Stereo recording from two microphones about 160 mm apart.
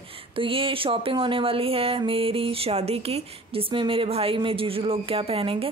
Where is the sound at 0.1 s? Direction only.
35° right (ahead or behind).